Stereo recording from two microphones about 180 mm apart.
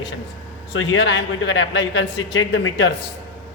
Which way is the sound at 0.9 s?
80° left.